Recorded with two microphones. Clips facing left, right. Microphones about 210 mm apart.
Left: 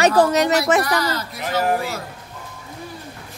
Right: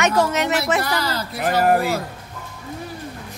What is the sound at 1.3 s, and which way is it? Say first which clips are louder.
Speech: right 5 dB; 55° right (ahead or behind).